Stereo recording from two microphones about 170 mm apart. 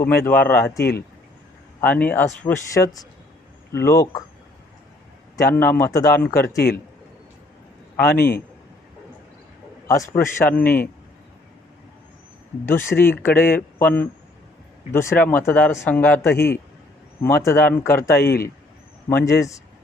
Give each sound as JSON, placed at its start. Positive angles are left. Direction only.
{"t": 0.3, "sound": "speech", "side_deg": 15}
{"t": 5.4, "sound": "speech", "side_deg": 15}
{"t": 8.1, "sound": "a man's voice", "side_deg": 65}
{"t": 9.8, "sound": "speech", "side_deg": 20}
{"t": 12.6, "sound": "speech", "side_deg": 15}
{"t": 18.2, "sound": "a man's voice", "side_deg": 70}
{"t": 19.0, "sound": "speech", "side_deg": 15}